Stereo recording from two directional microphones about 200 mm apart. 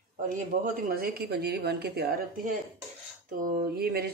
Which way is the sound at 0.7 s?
45° right (ahead or behind).